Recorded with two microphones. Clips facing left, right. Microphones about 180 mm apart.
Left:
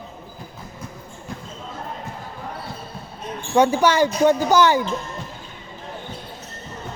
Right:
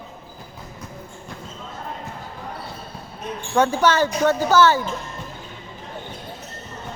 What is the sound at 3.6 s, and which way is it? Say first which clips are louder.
Speech: left 2 dB; 10° left (ahead or behind).